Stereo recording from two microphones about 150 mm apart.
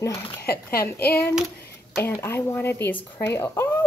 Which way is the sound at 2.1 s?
20° left (ahead or behind).